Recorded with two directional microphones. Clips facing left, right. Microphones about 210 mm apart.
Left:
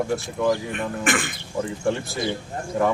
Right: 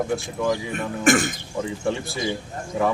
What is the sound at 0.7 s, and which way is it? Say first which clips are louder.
Speech: right 5 dB; 45° right (ahead or behind).